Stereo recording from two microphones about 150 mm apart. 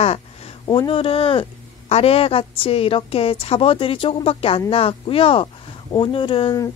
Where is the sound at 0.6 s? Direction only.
30° left (ahead or behind).